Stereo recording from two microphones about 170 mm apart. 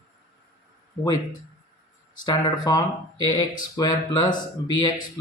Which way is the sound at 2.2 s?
25° left (ahead or behind).